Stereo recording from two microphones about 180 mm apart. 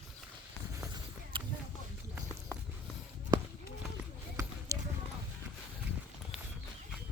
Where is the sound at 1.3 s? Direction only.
30° right (ahead or behind).